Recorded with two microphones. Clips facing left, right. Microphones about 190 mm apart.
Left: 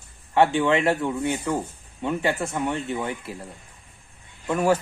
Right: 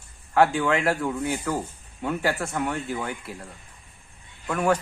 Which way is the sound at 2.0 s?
20° left (ahead or behind).